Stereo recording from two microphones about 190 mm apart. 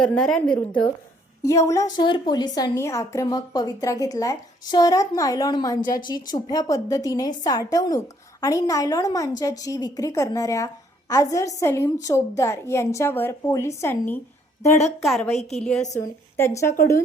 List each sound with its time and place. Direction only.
0.0 s a woman's voice: 5° left (ahead or behind)
1.4 s a woman's voice: 15° left (ahead or behind)
15.0 s a woman's voice: centre (ahead or behind)
16.0 s a woman's voice: 15° left (ahead or behind)